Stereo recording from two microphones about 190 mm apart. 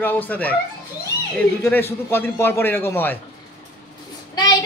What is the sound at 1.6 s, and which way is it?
A woman's voice, 10° left (ahead or behind).